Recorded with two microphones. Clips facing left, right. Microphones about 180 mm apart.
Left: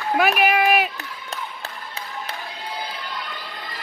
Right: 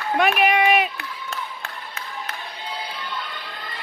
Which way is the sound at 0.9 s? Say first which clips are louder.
Right 1 dB; 40° left (ahead or behind).